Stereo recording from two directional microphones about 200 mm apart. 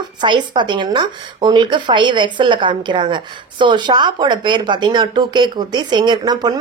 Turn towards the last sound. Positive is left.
turn(degrees=-20)  # may be behind; listen again after turning